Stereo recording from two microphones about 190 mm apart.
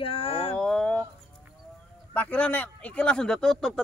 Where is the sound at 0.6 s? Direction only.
5° left (ahead or behind).